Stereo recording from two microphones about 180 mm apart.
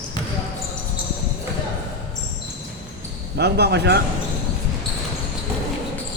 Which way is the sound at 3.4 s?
65° right (ahead or behind).